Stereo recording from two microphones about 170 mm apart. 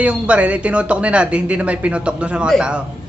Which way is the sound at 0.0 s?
5° right (ahead or behind).